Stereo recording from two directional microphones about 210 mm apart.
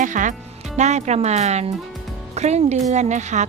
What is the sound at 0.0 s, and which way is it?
Speech, 35° right (ahead or behind).